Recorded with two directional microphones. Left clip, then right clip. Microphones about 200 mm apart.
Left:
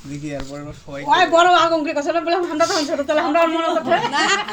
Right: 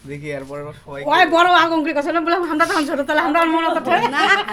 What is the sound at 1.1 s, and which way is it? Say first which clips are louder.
Speech: even; 55° right (ahead or behind).